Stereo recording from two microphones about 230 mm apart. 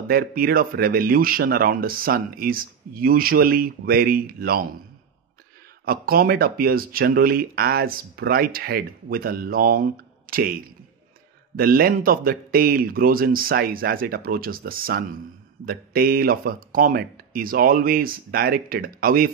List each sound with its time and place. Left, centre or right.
0.1 s speech: right
5.9 s speech: right
11.5 s speech: right